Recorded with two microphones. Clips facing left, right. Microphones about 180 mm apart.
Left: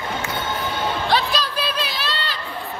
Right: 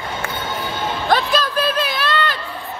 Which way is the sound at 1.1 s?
50° right (ahead or behind).